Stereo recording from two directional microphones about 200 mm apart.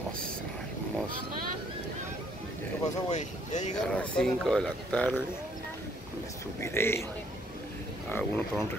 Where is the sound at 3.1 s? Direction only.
35° left (ahead or behind).